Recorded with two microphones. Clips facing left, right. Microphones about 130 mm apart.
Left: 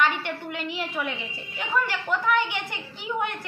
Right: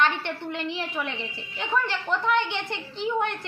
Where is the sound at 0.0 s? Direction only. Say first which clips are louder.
Even; 10° left (ahead or behind).